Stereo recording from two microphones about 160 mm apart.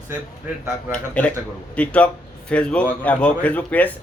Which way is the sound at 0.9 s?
10° left (ahead or behind).